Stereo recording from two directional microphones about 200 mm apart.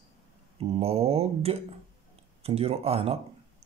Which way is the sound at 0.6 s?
30° right (ahead or behind).